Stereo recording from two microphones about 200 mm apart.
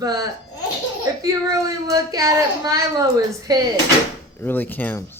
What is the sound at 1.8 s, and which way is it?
Speech, 15° right (ahead or behind).